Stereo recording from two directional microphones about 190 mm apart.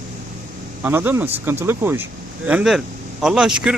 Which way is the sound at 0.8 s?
10° right (ahead or behind).